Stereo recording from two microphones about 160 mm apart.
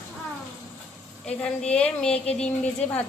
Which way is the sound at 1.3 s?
5° left (ahead or behind).